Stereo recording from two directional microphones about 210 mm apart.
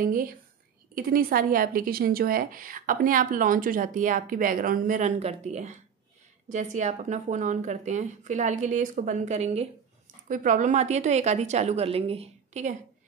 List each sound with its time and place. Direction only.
0.0 s speech: 40° right (ahead or behind)